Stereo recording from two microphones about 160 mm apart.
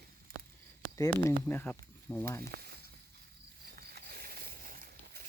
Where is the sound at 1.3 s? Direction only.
10° left (ahead or behind).